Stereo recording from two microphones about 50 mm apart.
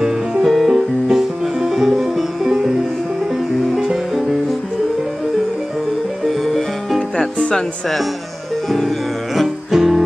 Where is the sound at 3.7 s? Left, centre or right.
Centre.